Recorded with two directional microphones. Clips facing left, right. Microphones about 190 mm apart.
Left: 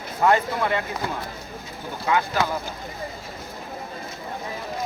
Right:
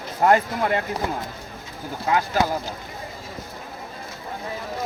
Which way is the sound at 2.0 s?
40° right (ahead or behind).